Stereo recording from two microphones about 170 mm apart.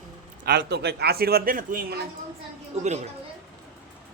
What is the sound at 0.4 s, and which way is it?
Speech, 70° right (ahead or behind).